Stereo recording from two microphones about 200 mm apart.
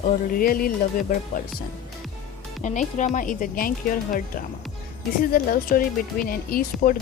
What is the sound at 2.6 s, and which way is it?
Speech, 40° left (ahead or behind).